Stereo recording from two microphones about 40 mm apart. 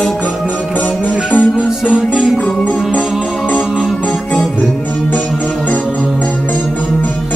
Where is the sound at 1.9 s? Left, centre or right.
Right.